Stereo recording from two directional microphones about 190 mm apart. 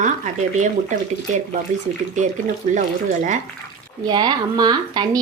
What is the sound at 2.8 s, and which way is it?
Speech, 40° right (ahead or behind).